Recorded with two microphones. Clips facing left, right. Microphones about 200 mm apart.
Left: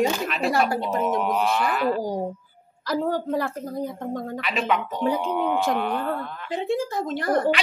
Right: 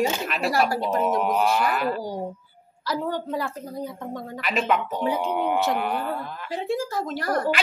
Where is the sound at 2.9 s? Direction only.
45° left (ahead or behind).